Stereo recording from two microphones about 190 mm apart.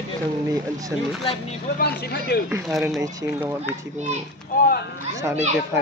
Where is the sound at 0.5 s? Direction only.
20° right (ahead or behind).